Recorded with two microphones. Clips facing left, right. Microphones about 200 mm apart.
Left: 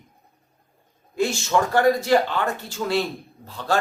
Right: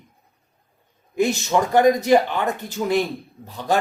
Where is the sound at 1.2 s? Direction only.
15° right (ahead or behind).